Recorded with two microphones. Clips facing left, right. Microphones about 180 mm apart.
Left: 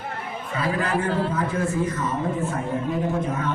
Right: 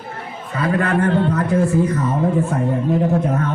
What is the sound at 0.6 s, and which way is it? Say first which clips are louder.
Speech: right 6 dB; 60° right (ahead or behind).